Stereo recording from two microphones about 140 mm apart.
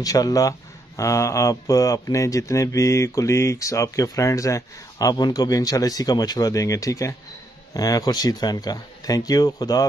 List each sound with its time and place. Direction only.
0.0 s speech: 25° left (ahead or behind)